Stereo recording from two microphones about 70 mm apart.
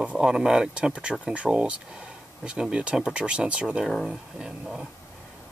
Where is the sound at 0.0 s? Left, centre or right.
Centre.